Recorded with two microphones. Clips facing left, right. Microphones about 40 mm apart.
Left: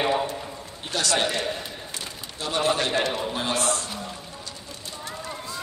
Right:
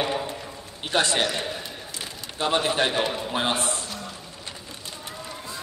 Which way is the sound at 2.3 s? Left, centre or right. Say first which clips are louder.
Right 5 dB; right.